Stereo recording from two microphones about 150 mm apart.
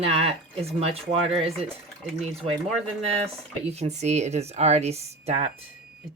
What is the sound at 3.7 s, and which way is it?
Speech, 45° right (ahead or behind).